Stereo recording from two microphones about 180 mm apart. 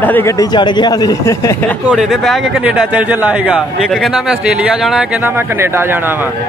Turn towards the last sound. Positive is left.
turn(degrees=-10)  # may be behind; listen again after turning